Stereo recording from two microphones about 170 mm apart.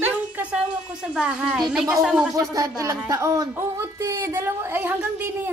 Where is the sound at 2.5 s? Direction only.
20° right (ahead or behind).